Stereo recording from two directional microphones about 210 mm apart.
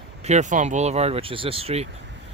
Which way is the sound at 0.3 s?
35° right (ahead or behind).